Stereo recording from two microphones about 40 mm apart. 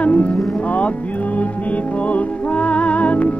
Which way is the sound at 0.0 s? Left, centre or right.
Left.